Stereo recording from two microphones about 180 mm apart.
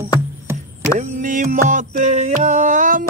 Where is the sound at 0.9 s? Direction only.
45° right (ahead or behind).